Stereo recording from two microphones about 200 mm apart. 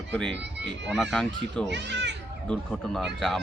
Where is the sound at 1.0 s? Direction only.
Centre (ahead or behind).